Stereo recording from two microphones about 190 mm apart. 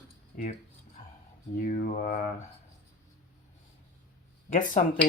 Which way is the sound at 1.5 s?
45° left (ahead or behind).